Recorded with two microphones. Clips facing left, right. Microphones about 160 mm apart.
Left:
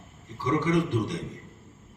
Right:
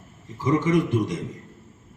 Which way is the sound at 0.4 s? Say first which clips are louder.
Right 4 dB; 20° right (ahead or behind).